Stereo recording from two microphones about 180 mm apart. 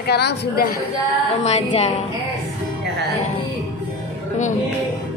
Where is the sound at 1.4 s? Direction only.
40° left (ahead or behind).